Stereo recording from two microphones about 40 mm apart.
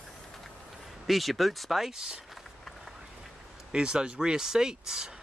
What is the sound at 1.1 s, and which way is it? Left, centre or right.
Speech, centre.